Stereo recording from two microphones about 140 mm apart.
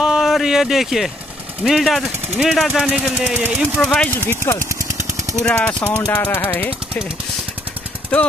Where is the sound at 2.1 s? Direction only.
15° right (ahead or behind).